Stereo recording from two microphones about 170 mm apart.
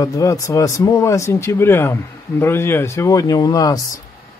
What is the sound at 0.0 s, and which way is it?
Speech, 20° left (ahead or behind).